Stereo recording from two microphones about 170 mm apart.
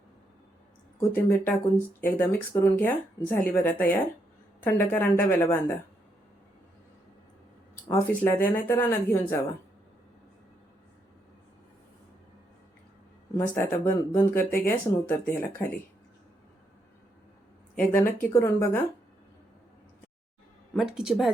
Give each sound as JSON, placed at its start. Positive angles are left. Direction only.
{"t": 0.9, "sound": "speech", "side_deg": 10}
{"t": 7.9, "sound": "speech", "side_deg": 15}
{"t": 13.5, "sound": "speech", "side_deg": 15}
{"t": 17.7, "sound": "speech", "side_deg": 10}
{"t": 20.7, "sound": "speech", "side_deg": -5}